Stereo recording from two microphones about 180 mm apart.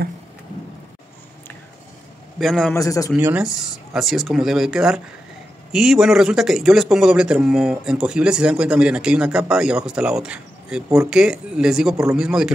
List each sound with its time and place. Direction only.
2.3 s a man's voice: centre (ahead or behind)
2.7 s a man's voice: 20° left (ahead or behind)
3.2 s speech: 10° right (ahead or behind)
3.4 s a man's voice: centre (ahead or behind)